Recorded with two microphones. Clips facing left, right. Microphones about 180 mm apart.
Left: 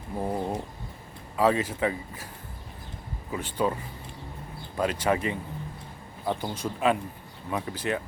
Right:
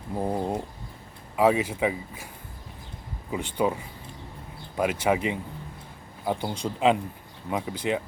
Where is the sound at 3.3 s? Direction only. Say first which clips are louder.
Right 2 dB; 15° right (ahead or behind).